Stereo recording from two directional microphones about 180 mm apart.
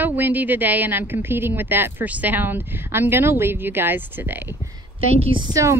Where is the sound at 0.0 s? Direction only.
10° right (ahead or behind).